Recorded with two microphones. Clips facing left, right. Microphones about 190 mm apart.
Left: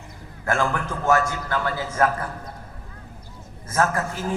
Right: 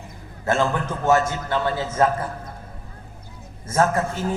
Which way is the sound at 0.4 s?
20° right (ahead or behind).